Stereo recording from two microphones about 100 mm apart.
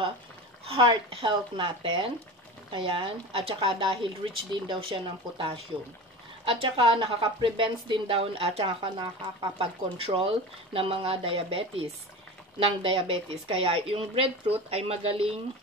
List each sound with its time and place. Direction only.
0.7 s a woman's voice: 60° right (ahead or behind); by 15.3 s 80° right